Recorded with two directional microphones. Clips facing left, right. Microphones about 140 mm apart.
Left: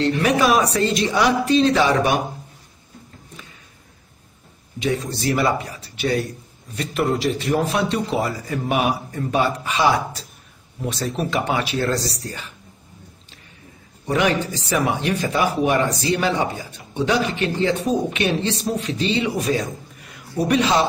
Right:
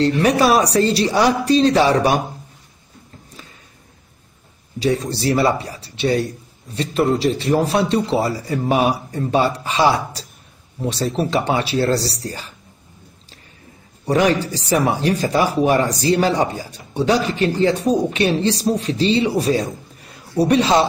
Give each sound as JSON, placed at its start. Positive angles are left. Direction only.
{"t": 0.0, "sound": "speech", "side_deg": -35}
{"t": 4.7, "sound": "speech", "side_deg": -35}
{"t": 14.0, "sound": "speech", "side_deg": -35}